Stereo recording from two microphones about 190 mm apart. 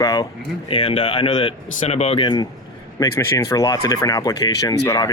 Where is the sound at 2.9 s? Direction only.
15° left (ahead or behind).